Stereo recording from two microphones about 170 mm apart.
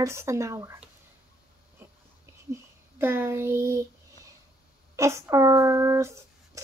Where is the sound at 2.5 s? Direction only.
15° right (ahead or behind).